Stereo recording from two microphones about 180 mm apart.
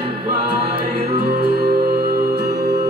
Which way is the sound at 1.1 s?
60° right (ahead or behind).